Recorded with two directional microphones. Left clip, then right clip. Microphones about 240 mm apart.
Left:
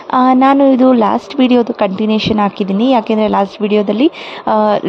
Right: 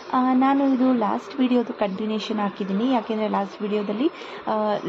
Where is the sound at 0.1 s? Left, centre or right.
Left.